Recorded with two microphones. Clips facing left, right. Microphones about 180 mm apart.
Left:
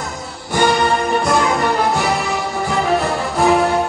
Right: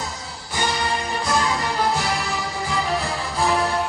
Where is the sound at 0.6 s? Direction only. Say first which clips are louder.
Left 9 dB; 60° left (ahead or behind).